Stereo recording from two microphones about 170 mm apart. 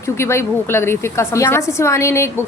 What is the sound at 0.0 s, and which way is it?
A woman's voice, 15° left (ahead or behind).